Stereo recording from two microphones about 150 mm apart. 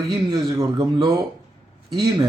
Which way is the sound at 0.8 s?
25° right (ahead or behind).